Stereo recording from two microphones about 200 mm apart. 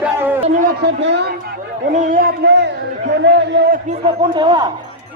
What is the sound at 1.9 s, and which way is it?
A man's voice, 40° right (ahead or behind).